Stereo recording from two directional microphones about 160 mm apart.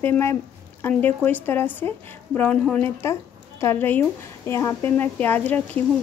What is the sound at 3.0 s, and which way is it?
Speech, 20° left (ahead or behind).